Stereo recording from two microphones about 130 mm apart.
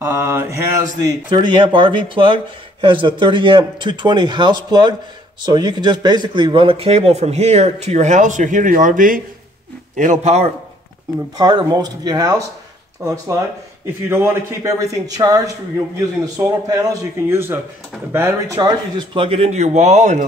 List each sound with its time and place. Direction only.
0.0 s mantra: 20° right (ahead or behind)
1.3 s speech: 35° right (ahead or behind); by 9.2 s 90° right
9.9 s speech: 70° right (ahead or behind)
11.3 s a man's voice: 30° right (ahead or behind)
17.3 s a man's voice: 15° right (ahead or behind)
18.6 s speech: 35° right (ahead or behind); by 20.2 s 65° right (ahead or behind)